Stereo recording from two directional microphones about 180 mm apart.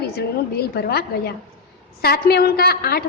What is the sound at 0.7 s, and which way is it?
A woman's voice, 60° left (ahead or behind).